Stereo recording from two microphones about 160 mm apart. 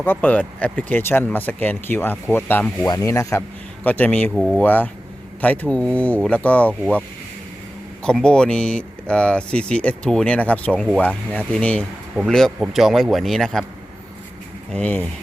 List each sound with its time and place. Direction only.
0.0 s speech: 10° left (ahead or behind)
2.8 s speech: 20° left (ahead or behind)
8.0 s speech: 5° left (ahead or behind)
14.7 s speech: 10° left (ahead or behind)